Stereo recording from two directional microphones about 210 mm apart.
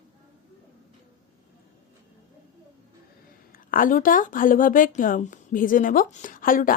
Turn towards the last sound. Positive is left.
turn(degrees=40)  # may be behind; listen again after turning